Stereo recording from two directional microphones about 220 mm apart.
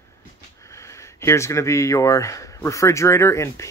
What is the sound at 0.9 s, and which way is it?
Speech, 15° left (ahead or behind).